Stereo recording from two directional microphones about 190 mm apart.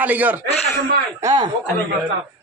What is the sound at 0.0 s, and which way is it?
Speech, 10° right (ahead or behind).